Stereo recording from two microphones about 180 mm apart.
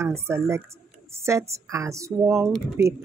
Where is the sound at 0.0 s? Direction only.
15° right (ahead or behind).